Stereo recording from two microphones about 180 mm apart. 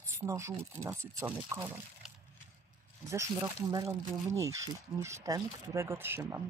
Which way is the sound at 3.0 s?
15° right (ahead or behind).